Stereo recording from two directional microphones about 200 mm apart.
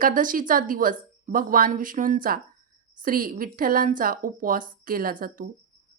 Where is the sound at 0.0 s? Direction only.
40° right (ahead or behind).